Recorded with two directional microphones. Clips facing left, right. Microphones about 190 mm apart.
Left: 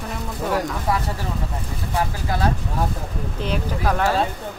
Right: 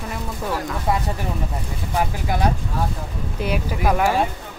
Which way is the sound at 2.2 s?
15° right (ahead or behind).